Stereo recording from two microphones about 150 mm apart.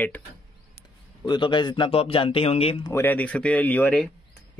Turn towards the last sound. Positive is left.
turn(degrees=10)  # may be behind; listen again after turning